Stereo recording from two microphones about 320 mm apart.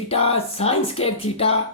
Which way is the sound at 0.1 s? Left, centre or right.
Centre.